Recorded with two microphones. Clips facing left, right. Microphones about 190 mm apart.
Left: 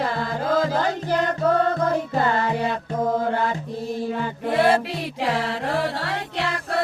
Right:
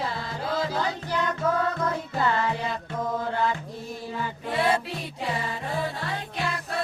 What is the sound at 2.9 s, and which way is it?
Mantra, 50° left (ahead or behind).